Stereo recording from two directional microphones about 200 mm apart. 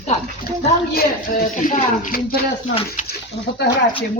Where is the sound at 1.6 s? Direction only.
40° left (ahead or behind).